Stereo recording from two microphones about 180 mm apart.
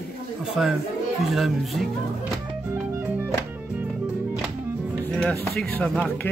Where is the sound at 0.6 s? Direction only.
Centre (ahead or behind).